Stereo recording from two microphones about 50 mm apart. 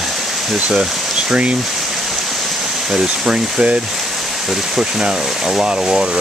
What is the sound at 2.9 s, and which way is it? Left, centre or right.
Speech, centre.